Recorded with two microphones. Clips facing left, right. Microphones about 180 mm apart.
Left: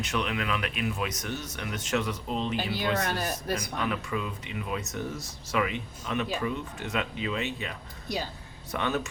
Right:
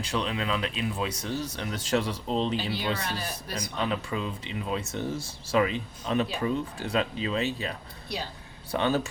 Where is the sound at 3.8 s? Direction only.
25° right (ahead or behind).